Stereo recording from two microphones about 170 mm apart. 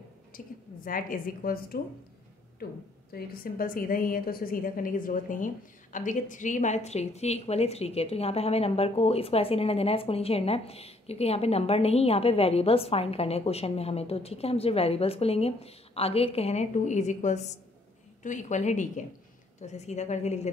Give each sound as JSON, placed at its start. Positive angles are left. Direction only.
{"t": 0.3, "sound": "a woman's voice", "side_deg": 55}
{"t": 3.1, "sound": "a woman's voice", "side_deg": 60}